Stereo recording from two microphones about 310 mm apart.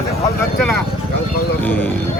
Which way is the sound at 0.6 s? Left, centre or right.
Centre.